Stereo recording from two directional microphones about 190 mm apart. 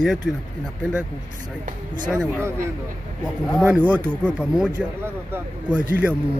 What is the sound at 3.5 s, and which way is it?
Speech, 10° right (ahead or behind).